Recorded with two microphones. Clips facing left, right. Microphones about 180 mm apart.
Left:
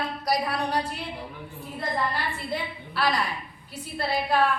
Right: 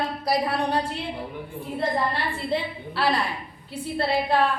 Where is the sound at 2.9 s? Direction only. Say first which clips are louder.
Right 2 dB; 30° right (ahead or behind).